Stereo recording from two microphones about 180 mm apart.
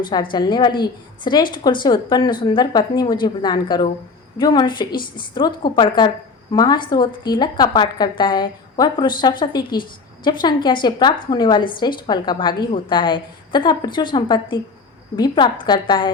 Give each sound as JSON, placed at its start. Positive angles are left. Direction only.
{"t": 0.1, "sound": "a woman's voice", "side_deg": 25}